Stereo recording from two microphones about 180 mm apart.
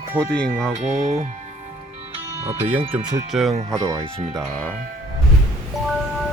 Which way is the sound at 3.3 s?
Centre (ahead or behind).